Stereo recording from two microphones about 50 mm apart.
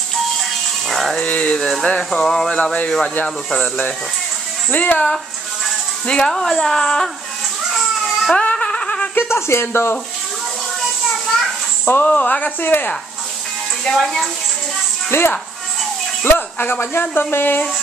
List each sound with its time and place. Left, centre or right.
0.4 s music: centre
1.2 s speech: left
1.6 s speech: centre
4.6 s speech: left
6.0 s speech: centre
6.3 s speech: centre
8.3 s music: centre
9.1 s speech: left
11.9 s speech: left
13.9 s speech: centre
15.0 s speech: left